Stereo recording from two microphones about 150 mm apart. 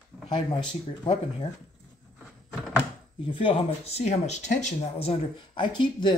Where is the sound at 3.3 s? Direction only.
35° left (ahead or behind).